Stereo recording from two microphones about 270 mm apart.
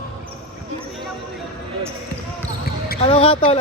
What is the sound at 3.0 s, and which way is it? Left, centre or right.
Speech, left.